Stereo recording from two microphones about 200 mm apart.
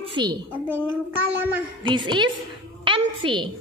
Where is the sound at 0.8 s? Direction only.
10° right (ahead or behind).